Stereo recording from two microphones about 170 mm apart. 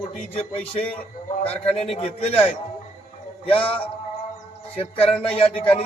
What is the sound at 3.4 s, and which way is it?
Speech, 30° left (ahead or behind).